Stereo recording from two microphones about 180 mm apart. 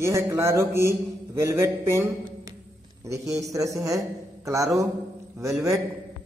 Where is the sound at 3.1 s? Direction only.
15° right (ahead or behind).